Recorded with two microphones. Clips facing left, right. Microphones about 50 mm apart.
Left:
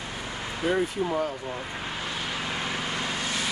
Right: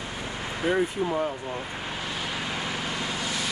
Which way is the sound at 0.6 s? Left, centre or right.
Centre.